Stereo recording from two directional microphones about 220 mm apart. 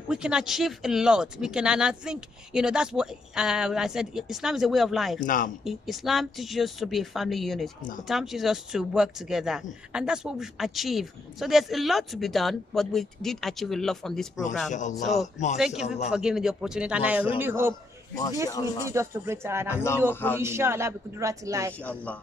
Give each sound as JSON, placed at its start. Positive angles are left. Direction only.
{"t": 0.1, "sound": "speech", "side_deg": -5}
{"t": 5.2, "sound": "speech", "side_deg": 35}
{"t": 5.6, "sound": "speech", "side_deg": 0}
{"t": 14.7, "sound": "speech", "side_deg": 35}
{"t": 15.5, "sound": "speech", "side_deg": 0}
{"t": 18.9, "sound": "speech", "side_deg": -10}
{"t": 20.1, "sound": "speech", "side_deg": 10}
{"t": 20.3, "sound": "speech", "side_deg": -10}
{"t": 21.8, "sound": "speech", "side_deg": 5}